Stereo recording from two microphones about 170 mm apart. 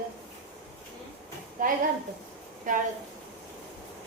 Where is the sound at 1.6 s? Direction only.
50° right (ahead or behind).